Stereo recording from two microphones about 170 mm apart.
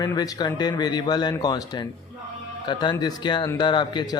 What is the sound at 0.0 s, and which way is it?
A man's voice, 20° left (ahead or behind).